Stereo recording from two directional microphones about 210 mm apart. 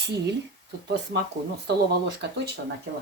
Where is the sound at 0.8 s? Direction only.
55° right (ahead or behind).